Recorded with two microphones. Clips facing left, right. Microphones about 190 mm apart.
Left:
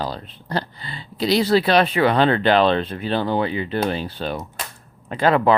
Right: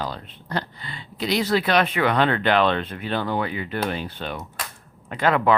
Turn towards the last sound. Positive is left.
turn(degrees=30)  # may be behind; listen again after turning